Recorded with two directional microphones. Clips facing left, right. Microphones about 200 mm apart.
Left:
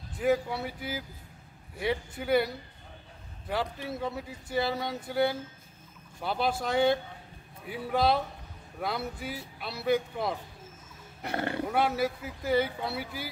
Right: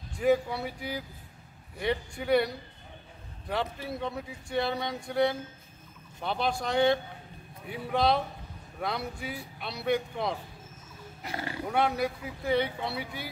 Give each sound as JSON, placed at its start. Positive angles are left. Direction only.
{"t": 0.1, "sound": "speech", "side_deg": 0}
{"t": 11.2, "sound": "speech", "side_deg": 55}
{"t": 11.7, "sound": "speech", "side_deg": 5}